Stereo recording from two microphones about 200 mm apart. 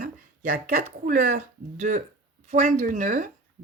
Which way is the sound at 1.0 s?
40° right (ahead or behind).